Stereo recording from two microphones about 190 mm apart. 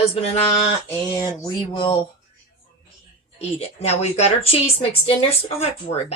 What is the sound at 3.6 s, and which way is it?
Speech, 35° left (ahead or behind).